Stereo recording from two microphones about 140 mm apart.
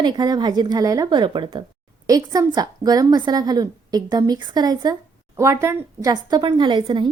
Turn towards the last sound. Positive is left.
turn(degrees=-35)  # may be behind; listen again after turning